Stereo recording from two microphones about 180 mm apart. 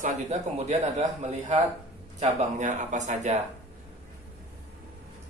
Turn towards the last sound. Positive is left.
turn(degrees=-40)  # may be behind; listen again after turning